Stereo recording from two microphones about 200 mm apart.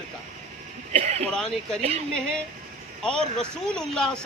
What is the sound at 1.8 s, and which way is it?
Speech, 30° right (ahead or behind).